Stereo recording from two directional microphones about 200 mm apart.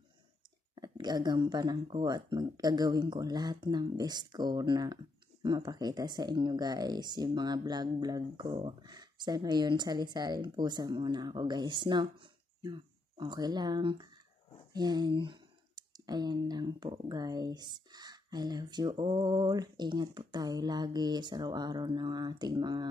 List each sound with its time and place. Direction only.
0.7 s speech: 20° right (ahead or behind)